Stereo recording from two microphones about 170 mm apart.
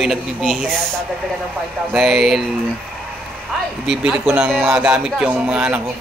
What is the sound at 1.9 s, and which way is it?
Speech, centre (ahead or behind).